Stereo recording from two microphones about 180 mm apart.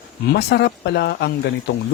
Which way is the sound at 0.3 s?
65° left (ahead or behind).